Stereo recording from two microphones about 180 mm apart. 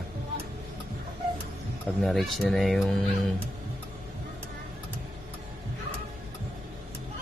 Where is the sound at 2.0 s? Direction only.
Centre (ahead or behind).